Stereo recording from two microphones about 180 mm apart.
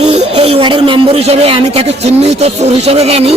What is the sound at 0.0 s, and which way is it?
Speech, 35° right (ahead or behind).